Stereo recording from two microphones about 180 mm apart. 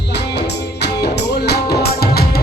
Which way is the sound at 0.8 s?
65° left (ahead or behind).